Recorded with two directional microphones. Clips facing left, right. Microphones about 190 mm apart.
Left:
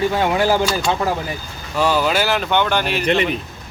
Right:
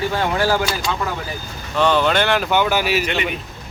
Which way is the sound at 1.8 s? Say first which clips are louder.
Right 1 dB; 5° left (ahead or behind).